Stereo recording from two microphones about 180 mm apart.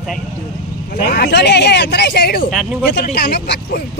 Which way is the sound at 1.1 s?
65° left (ahead or behind).